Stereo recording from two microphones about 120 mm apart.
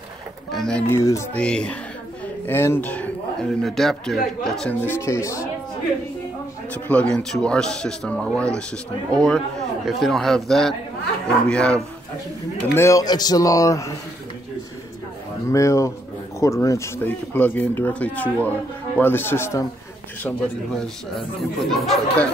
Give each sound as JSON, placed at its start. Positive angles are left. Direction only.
{"t": 0.5, "sound": "speech", "side_deg": 5}
{"t": 0.8, "sound": "speech", "side_deg": 25}
{"t": 1.3, "sound": "speech", "side_deg": 10}
{"t": 2.4, "sound": "speech", "side_deg": 20}
{"t": 4.8, "sound": "speech", "side_deg": 20}
{"t": 6.7, "sound": "speech", "side_deg": 10}
{"t": 12.7, "sound": "speech", "side_deg": 25}
{"t": 15.5, "sound": "speech", "side_deg": 25}
{"t": 20.2, "sound": "speech", "side_deg": 5}